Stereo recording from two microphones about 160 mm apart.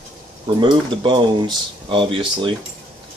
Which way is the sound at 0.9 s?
30° right (ahead or behind).